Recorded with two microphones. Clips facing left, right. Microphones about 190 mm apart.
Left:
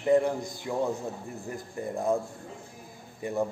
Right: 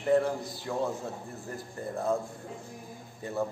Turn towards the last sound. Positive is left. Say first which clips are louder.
# left 3 dB
turn(degrees=15)  # may be behind; listen again after turning